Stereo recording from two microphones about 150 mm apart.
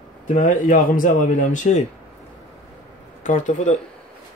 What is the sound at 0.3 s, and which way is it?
Speech, 60° left (ahead or behind).